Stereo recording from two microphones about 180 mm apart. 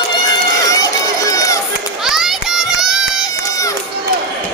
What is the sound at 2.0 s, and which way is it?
Children playing, centre (ahead or behind).